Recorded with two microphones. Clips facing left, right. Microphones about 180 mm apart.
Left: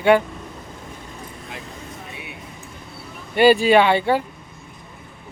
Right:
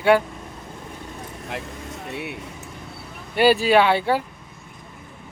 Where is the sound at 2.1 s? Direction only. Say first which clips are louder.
Right 7 dB; 65° right (ahead or behind).